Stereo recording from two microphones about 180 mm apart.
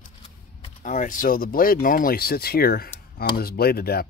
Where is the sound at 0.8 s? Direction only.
45° left (ahead or behind).